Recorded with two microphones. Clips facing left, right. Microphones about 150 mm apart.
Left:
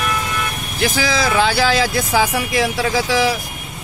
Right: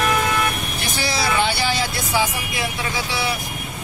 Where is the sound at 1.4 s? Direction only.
90° left.